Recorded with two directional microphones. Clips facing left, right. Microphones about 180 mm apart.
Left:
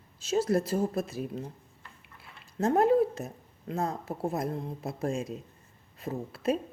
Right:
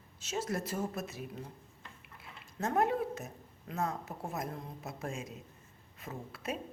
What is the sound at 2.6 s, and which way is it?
Speech, 30° left (ahead or behind).